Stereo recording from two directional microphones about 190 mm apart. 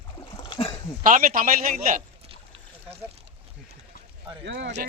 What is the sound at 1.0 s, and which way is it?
Speech, 45° right (ahead or behind).